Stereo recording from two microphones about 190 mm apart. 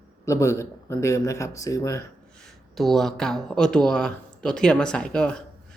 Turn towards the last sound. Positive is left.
turn(degrees=5)  # may be behind; listen again after turning